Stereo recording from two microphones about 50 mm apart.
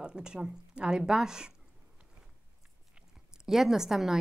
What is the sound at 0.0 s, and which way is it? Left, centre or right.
A woman's voice, centre.